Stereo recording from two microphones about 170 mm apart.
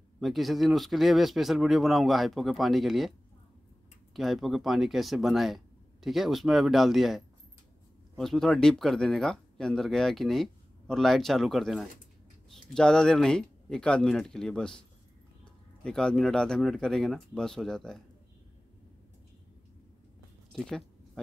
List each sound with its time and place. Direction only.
0.2 s speech: centre (ahead or behind)
15.8 s speech: 5° left (ahead or behind)
20.5 s a sound: centre (ahead or behind)